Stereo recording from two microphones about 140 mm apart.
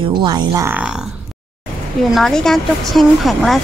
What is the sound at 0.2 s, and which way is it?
Speech, 30° right (ahead or behind).